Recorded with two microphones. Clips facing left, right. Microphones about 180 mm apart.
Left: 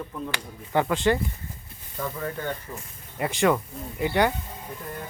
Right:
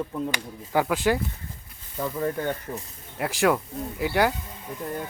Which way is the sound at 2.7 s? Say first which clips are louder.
Right 5 dB; 25° right (ahead or behind).